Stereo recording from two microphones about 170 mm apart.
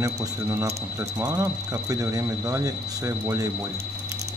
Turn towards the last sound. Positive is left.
turn(degrees=-20)  # may be behind; listen again after turning